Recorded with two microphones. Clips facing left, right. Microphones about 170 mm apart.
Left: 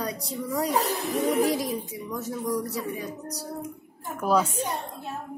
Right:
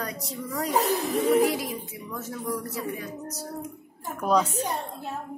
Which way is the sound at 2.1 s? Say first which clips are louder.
Left 3 dB; 15° left (ahead or behind).